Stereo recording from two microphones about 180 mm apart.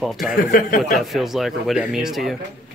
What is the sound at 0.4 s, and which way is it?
Speech, 50° left (ahead or behind).